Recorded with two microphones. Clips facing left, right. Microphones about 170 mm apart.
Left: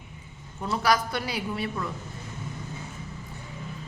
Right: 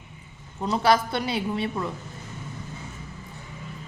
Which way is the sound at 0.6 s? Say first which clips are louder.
Right 3 dB; 25° right (ahead or behind).